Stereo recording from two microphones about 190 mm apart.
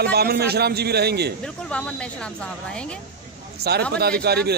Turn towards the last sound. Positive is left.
turn(degrees=-55)  # may be behind; listen again after turning